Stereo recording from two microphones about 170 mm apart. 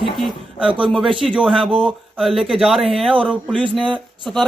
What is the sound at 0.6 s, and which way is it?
Speech, 30° right (ahead or behind).